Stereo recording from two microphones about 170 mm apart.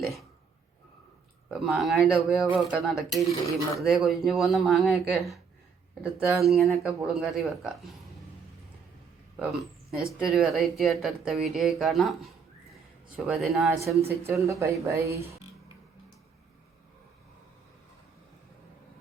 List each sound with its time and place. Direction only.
0.0 s a sound: centre (ahead or behind)
1.5 s speech: 5° right (ahead or behind)
9.4 s speech: centre (ahead or behind)
13.7 s speech: 15° right (ahead or behind)